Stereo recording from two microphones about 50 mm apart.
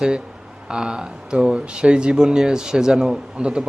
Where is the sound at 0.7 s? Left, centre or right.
Centre.